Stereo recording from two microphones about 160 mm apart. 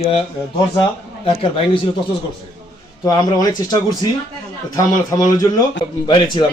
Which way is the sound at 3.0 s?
25° left (ahead or behind).